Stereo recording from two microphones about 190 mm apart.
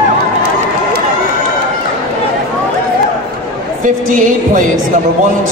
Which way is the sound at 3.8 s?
45° right (ahead or behind).